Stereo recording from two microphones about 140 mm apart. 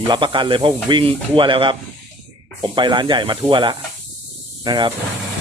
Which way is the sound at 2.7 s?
35° right (ahead or behind).